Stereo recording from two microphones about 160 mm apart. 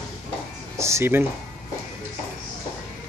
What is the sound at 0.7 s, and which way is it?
Speech, 15° right (ahead or behind).